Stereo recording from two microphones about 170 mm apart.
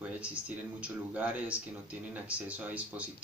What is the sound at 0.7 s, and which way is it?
Speech, 10° right (ahead or behind).